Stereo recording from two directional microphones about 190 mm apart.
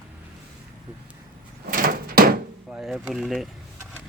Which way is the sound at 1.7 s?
50° right (ahead or behind).